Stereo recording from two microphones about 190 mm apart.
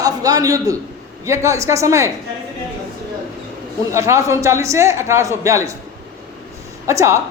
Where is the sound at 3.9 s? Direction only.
15° right (ahead or behind).